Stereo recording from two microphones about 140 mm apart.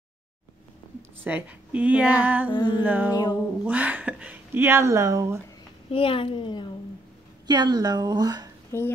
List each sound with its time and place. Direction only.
1.2 s speech: 10° right (ahead or behind)
2.5 s music: 30° left (ahead or behind)
2.8 s speech: 10° right (ahead or behind)
5.9 s a woman's voice: 40° left (ahead or behind)
7.4 s speech: 30° right (ahead or behind)
8.7 s a child's voice: 20° left (ahead or behind)